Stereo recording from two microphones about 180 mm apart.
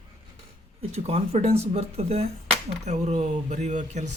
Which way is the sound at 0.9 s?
35° right (ahead or behind).